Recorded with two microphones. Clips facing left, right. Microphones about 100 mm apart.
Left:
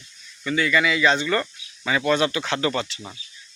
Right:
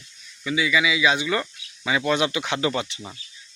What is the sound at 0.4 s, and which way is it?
Speech, 5° right (ahead or behind).